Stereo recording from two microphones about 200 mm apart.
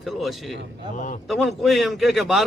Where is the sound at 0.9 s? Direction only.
40° left (ahead or behind).